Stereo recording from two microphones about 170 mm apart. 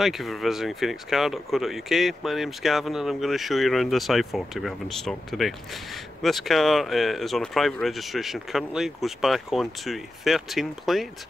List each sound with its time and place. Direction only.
0.0 s speech: centre (ahead or behind)